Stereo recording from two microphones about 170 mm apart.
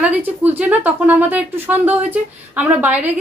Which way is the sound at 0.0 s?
10° right (ahead or behind).